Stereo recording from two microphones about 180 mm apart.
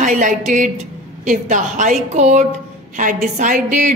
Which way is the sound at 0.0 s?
45° right (ahead or behind).